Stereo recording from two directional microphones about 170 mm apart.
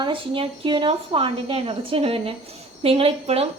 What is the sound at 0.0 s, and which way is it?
A woman's voice, 30° right (ahead or behind).